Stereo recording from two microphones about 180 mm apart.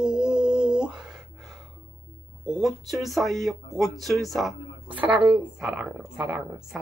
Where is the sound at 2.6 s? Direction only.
Centre (ahead or behind).